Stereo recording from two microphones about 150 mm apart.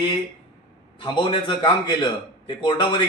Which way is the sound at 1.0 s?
30° left (ahead or behind).